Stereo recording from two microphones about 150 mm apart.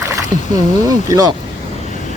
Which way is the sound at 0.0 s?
20° right (ahead or behind).